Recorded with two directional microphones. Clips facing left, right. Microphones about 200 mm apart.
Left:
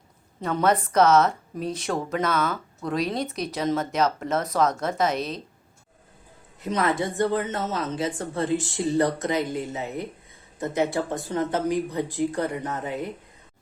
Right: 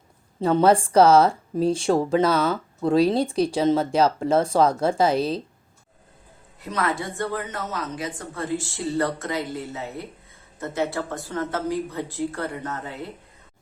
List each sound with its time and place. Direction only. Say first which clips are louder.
0.3 s speech: right 5 dB; 30° right (ahead or behind)
6.6 s speech: left 2 dB; 20° left (ahead or behind)